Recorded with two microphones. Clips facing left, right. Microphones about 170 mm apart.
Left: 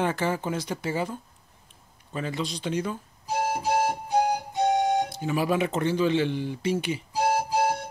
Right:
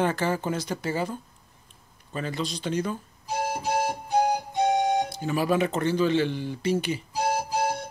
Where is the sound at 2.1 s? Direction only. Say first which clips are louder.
Even; 15° left (ahead or behind).